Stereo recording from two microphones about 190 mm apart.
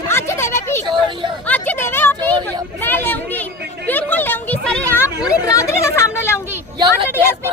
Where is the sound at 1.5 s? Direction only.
10° left (ahead or behind).